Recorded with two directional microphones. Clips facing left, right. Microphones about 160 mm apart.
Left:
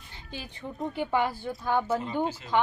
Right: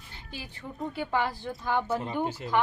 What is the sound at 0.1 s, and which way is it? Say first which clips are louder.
A woman's voice: left 2 dB; 20° left (ahead or behind).